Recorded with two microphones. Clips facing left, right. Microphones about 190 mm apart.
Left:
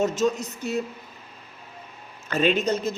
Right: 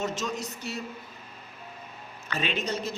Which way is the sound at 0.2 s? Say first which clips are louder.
Left 10 dB; 45° left (ahead or behind).